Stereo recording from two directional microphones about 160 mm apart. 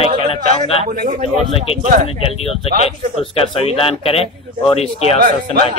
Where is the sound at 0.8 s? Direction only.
55° right (ahead or behind).